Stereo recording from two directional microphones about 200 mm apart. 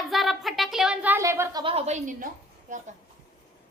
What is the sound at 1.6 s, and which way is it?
A woman's voice, 30° right (ahead or behind).